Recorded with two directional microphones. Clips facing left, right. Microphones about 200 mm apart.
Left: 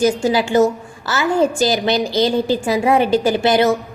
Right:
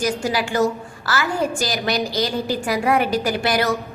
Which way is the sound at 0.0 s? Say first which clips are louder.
Left 6 dB; 25° left (ahead or behind).